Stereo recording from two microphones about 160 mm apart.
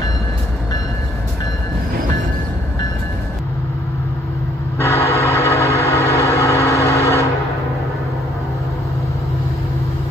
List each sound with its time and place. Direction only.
4.7 s vehicle: 15° left (ahead or behind)